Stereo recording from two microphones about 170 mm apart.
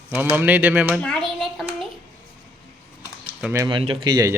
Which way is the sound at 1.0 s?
5° left (ahead or behind).